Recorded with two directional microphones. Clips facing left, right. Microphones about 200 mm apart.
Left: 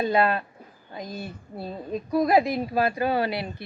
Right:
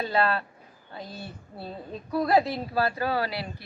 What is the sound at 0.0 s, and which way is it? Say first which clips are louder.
A woman's voice: left 3 dB; 15° left (ahead or behind).